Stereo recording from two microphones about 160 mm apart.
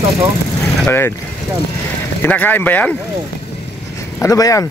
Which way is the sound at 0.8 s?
15° left (ahead or behind).